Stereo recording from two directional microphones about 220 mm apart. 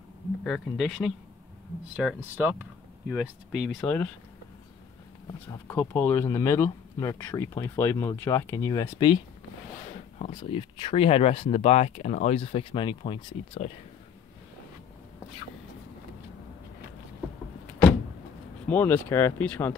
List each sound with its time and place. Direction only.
0.4 s speech: centre (ahead or behind)
5.5 s speech: 10° left (ahead or behind)
10.1 s speech: 25° left (ahead or behind)
18.7 s speech: 10° left (ahead or behind)